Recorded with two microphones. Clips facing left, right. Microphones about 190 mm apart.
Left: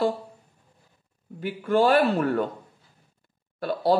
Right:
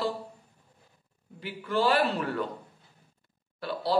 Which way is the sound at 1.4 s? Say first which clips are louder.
Left 6 dB; 50° left (ahead or behind).